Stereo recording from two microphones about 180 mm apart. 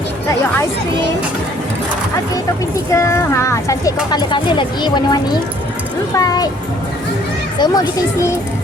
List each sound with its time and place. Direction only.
2.9 s speech: 15° left (ahead or behind)
7.6 s speech: 20° left (ahead or behind)